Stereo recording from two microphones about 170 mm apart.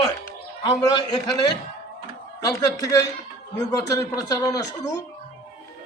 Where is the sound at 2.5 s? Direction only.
20° left (ahead or behind).